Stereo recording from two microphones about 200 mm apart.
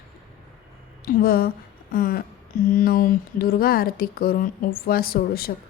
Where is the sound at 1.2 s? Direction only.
50° left (ahead or behind).